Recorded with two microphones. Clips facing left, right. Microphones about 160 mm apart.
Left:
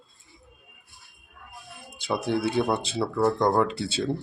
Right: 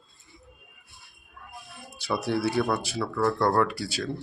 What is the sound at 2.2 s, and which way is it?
Speech, 20° left (ahead or behind).